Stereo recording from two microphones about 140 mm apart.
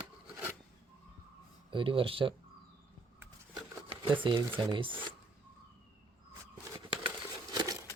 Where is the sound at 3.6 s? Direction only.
35° right (ahead or behind).